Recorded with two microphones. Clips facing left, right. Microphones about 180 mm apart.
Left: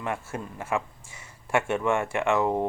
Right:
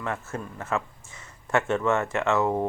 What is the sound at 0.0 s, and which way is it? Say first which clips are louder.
Speech: even; 10° left (ahead or behind).